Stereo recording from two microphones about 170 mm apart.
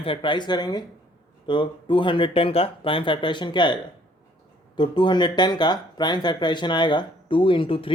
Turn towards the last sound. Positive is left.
turn(degrees=30)  # may be behind; listen again after turning